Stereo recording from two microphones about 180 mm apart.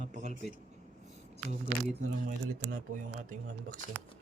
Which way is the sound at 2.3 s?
45° right (ahead or behind).